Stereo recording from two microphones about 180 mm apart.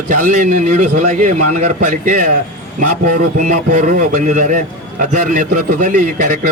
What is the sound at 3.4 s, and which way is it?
A man's voice, 40° right (ahead or behind).